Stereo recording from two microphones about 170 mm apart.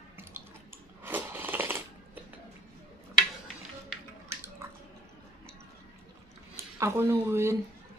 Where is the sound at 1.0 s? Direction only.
10° right (ahead or behind).